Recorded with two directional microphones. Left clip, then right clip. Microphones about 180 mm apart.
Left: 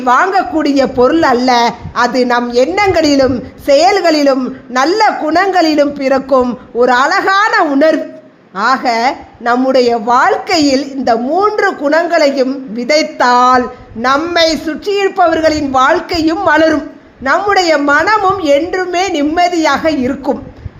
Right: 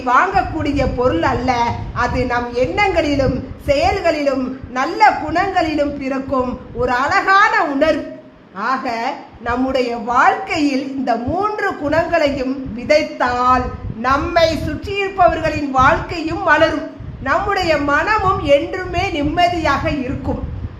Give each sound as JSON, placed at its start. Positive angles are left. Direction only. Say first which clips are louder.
{"t": 0.0, "sound": "a woman's voice", "louder": "left 4 dB", "side_deg": 45}